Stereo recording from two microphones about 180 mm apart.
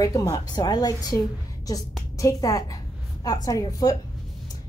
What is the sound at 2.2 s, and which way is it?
A woman's voice, 20° left (ahead or behind).